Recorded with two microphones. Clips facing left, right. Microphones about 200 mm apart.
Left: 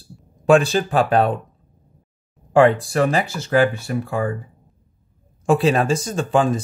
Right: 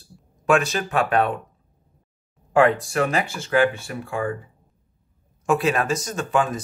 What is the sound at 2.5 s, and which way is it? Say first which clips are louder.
Speech: left 3 dB; 30° left (ahead or behind).